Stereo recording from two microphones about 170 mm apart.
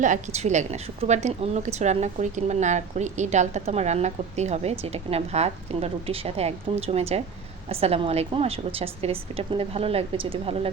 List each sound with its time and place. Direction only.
0.0 s a woman's voice: 45° right (ahead or behind)